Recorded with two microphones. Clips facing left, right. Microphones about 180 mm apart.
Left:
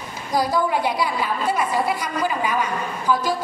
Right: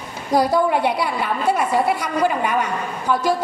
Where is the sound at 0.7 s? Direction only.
60° right (ahead or behind).